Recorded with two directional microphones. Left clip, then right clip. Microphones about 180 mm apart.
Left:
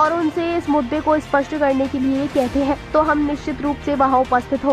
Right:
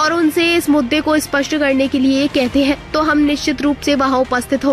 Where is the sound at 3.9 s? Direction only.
30° right (ahead or behind).